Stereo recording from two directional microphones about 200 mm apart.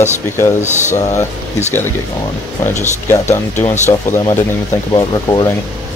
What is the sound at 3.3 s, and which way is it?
Speech, 10° left (ahead or behind).